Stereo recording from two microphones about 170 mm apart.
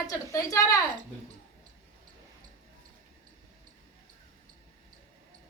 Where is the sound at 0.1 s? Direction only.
15° left (ahead or behind).